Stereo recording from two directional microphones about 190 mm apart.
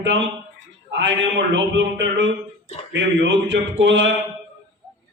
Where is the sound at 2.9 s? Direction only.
70° right (ahead or behind).